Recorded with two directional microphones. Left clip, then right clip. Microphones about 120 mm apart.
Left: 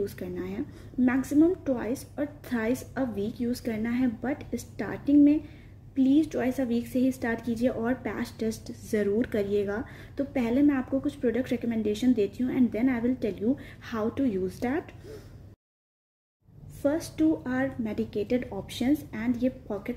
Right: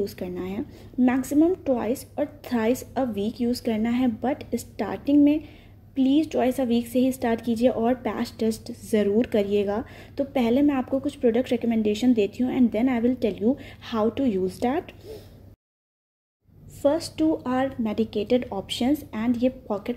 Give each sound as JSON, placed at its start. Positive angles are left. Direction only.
{"t": 0.0, "sound": "a woman's voice", "side_deg": -35}
{"t": 16.8, "sound": "a woman's voice", "side_deg": -35}